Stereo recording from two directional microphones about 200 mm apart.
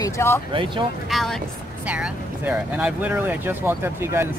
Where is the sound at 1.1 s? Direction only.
Centre (ahead or behind).